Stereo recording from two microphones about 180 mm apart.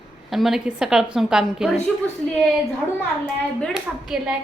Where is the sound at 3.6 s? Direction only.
5° right (ahead or behind).